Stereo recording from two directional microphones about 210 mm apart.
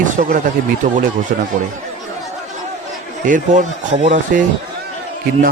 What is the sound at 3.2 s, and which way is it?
Speech, 35° right (ahead or behind).